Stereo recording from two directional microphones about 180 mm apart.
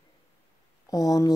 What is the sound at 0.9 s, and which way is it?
Speech, 20° left (ahead or behind).